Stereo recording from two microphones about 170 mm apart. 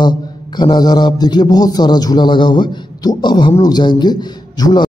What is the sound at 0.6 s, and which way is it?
A man's voice, 25° left (ahead or behind).